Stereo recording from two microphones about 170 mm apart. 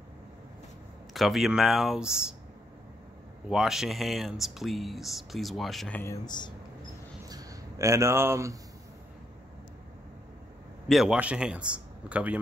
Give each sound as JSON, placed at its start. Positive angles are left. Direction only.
{"t": 1.1, "sound": "speech", "side_deg": 0}
{"t": 3.4, "sound": "speech", "side_deg": 0}
{"t": 6.2, "sound": "speech", "side_deg": 25}
{"t": 7.2, "sound": "a sound", "side_deg": -20}
{"t": 10.9, "sound": "a man's voice", "side_deg": -5}